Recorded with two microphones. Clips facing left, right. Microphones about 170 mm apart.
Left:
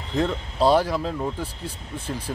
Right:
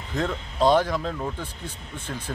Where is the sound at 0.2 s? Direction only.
10° left (ahead or behind).